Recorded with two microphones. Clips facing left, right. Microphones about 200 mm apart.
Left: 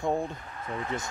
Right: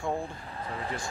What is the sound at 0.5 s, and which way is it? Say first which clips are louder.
Speech: left 1 dB; 30° right (ahead or behind).